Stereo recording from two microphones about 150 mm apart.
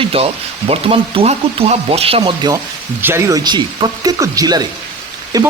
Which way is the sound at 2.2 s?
25° right (ahead or behind).